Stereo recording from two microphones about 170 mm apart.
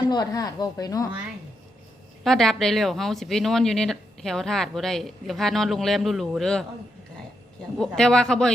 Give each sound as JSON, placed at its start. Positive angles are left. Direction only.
{"t": 0.1, "sound": "speech", "side_deg": 20}
{"t": 2.2, "sound": "speech", "side_deg": 0}
{"t": 7.8, "sound": "speech", "side_deg": 5}